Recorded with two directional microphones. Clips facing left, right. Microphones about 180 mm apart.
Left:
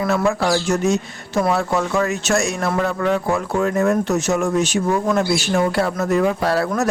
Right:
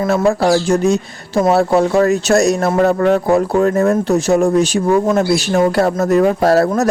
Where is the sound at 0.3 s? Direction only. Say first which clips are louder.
Right 5 dB; 40° right (ahead or behind).